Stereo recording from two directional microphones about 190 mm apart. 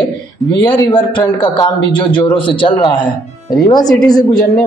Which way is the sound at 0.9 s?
25° left (ahead or behind).